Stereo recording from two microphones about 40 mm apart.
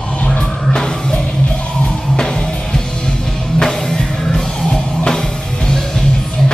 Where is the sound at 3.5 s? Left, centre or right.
Centre.